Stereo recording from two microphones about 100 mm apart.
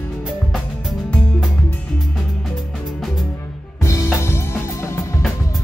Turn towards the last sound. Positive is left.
turn(degrees=30)  # may be behind; listen again after turning